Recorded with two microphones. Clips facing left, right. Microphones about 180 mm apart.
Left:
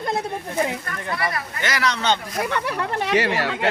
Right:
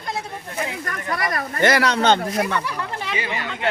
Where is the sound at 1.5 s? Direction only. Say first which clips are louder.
Right 9 dB; 55° right (ahead or behind).